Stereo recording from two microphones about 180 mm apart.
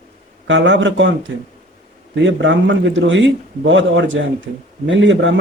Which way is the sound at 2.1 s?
85° right.